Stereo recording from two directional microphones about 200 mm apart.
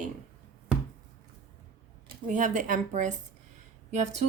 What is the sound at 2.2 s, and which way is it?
A woman's voice, 40° right (ahead or behind).